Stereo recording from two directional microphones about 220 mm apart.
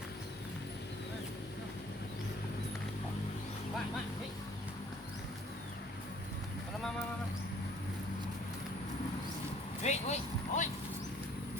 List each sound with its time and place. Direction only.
9.8 s vehicle: 30° left (ahead or behind)